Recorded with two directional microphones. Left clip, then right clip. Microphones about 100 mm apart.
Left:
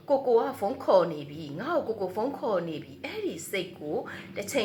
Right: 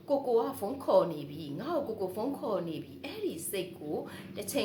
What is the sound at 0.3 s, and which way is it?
Speech, 20° right (ahead or behind).